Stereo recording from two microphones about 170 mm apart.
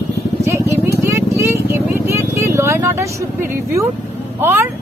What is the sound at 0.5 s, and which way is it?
Vehicle, 15° right (ahead or behind).